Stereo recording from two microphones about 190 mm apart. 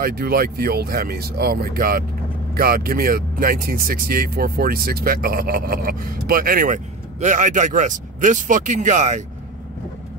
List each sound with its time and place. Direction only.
0.0 s speech: 55° right (ahead or behind)